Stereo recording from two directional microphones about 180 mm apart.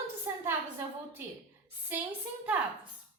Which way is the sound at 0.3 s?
10° right (ahead or behind).